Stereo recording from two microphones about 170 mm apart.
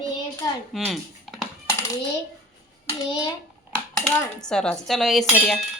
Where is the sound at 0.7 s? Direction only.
Centre (ahead or behind).